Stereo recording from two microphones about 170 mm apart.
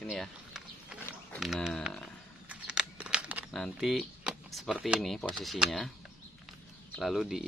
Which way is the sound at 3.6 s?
Centre (ahead or behind).